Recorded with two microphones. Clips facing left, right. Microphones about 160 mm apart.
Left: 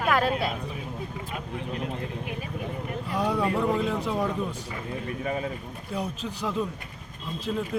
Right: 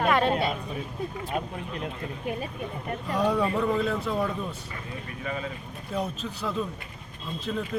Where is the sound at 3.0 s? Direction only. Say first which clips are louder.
Right 1 dB; 10° left (ahead or behind).